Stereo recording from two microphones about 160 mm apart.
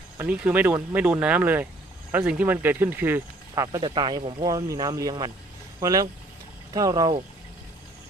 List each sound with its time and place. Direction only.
0.2 s speech: 10° right (ahead or behind); by 7.2 s 25° right (ahead or behind)